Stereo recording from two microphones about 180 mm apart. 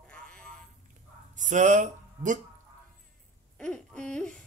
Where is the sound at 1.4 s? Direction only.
40° right (ahead or behind).